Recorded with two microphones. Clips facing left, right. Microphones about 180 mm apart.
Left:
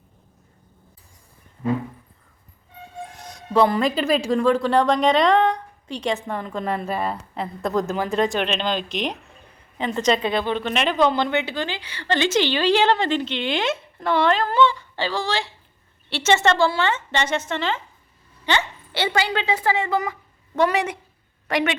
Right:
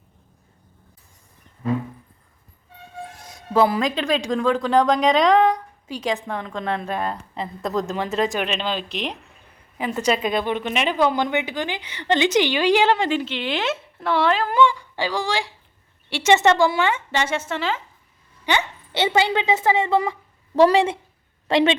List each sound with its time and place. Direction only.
3.5 s a woman's voice: 5° right (ahead or behind); by 21.8 s 25° right (ahead or behind)